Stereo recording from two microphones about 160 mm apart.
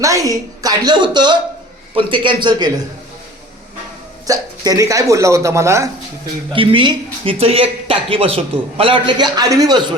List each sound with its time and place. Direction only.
0.0 s speech: 20° right (ahead or behind)
4.3 s speech: 20° right (ahead or behind)
6.5 s speech: 35° right (ahead or behind)